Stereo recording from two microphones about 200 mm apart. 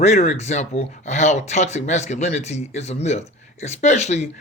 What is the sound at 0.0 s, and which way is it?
Speech, 35° left (ahead or behind).